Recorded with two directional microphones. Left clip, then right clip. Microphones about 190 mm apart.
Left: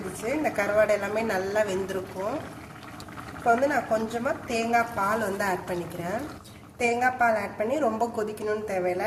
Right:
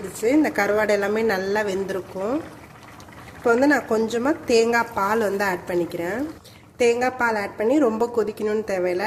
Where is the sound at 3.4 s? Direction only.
55° right (ahead or behind).